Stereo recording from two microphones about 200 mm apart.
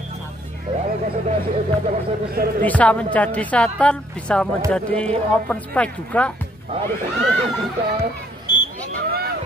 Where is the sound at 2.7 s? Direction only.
5° left (ahead or behind).